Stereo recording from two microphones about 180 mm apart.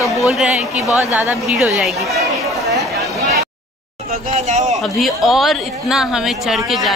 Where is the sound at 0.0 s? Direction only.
15° left (ahead or behind).